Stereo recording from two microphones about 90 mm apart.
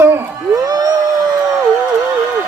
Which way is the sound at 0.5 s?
45° right (ahead or behind).